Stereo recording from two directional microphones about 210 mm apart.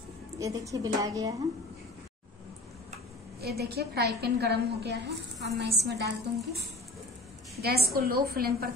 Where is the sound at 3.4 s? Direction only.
50° right (ahead or behind).